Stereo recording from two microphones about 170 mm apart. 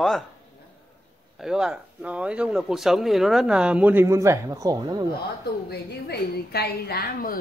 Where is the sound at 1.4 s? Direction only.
5° right (ahead or behind); by 5.0 s 20° right (ahead or behind).